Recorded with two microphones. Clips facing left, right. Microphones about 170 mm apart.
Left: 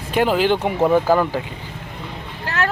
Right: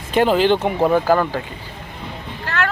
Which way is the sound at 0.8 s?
5° right (ahead or behind).